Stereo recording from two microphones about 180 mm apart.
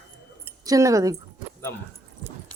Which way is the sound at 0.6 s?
20° right (ahead or behind).